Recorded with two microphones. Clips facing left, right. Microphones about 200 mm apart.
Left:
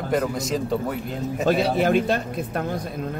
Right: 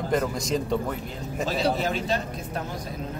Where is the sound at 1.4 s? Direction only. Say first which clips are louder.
Left 5 dB; 60° left (ahead or behind).